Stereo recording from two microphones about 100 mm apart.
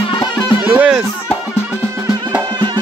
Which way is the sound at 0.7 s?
10° right (ahead or behind).